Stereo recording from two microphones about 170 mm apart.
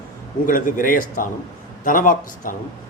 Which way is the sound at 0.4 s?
50° left (ahead or behind).